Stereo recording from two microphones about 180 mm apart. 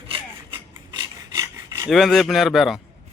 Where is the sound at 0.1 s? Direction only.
25° right (ahead or behind).